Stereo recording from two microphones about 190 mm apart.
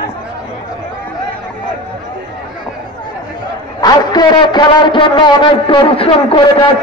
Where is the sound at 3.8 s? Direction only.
20° left (ahead or behind).